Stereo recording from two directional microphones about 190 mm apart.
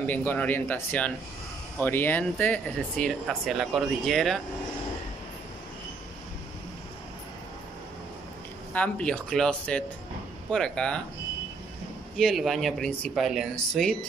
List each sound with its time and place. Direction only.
0.0 s speech: 10° left (ahead or behind)
8.7 s speech: 5° left (ahead or behind)
12.2 s speech: centre (ahead or behind)